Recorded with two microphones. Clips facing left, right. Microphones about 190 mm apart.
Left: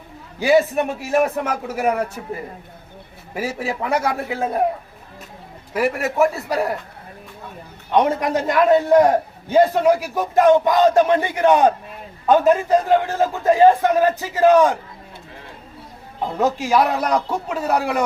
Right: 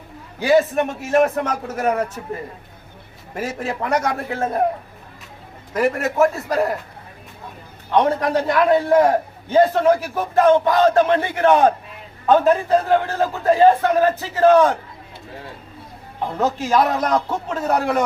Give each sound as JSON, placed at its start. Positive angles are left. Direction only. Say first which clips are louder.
{"t": 0.3, "sound": "a man's voice", "louder": "even", "side_deg": 10}
{"t": 3.3, "sound": "a man's voice", "louder": "left 1 dB", "side_deg": 10}
{"t": 5.7, "sound": "a man's voice", "louder": "right 1 dB", "side_deg": 10}
{"t": 7.9, "sound": "a man's voice", "louder": "even", "side_deg": 15}
{"t": 16.4, "sound": "a man's voice", "louder": "left 1 dB", "side_deg": 10}